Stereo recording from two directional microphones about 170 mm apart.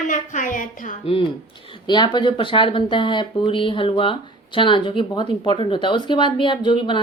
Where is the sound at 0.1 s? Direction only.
50° left (ahead or behind).